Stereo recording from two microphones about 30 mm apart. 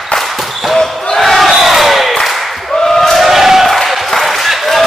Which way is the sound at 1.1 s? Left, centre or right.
Centre.